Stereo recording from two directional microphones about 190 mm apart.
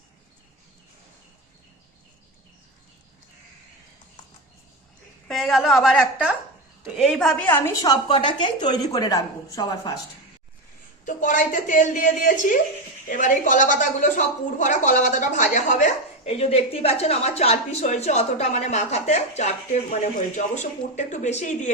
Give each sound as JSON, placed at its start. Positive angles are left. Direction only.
{"t": 5.3, "sound": "a woman's voice", "side_deg": 0}
{"t": 11.0, "sound": "a woman's voice", "side_deg": 45}